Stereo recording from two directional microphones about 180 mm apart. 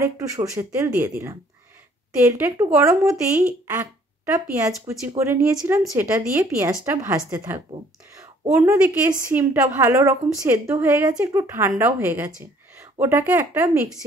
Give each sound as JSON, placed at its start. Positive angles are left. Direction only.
{"t": 0.0, "sound": "speech", "side_deg": -15}
{"t": 4.8, "sound": "speech", "side_deg": -15}